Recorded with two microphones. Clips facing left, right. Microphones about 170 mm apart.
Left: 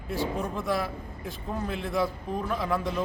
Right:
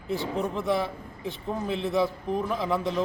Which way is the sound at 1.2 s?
25° right (ahead or behind).